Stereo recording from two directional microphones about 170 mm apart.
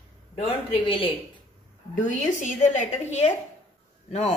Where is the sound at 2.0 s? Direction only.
45° left (ahead or behind).